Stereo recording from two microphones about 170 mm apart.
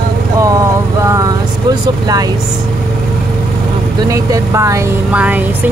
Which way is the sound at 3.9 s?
20° right (ahead or behind).